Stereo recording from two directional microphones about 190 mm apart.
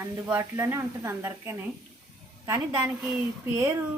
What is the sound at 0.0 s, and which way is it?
Speech, 10° right (ahead or behind).